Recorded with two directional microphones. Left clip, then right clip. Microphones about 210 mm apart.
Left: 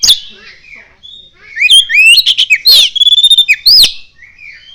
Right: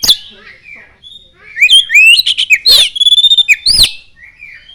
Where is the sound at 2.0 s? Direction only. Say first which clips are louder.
Left 1 dB; centre (ahead or behind).